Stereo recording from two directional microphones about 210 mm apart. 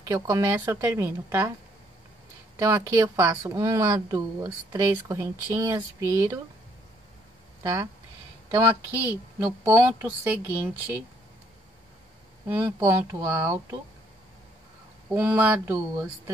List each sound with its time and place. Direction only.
0.1 s speech: 15° right (ahead or behind)
2.5 s speech: 15° right (ahead or behind)
7.6 s speech: 15° right (ahead or behind)
12.5 s speech: 10° right (ahead or behind)
15.1 s speech: 10° right (ahead or behind)